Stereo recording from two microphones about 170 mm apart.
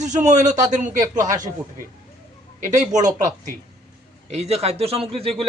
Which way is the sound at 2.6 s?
45° right (ahead or behind).